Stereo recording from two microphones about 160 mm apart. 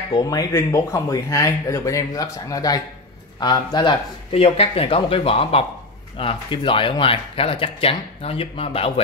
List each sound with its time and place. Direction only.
0.1 s speech: 20° left (ahead or behind)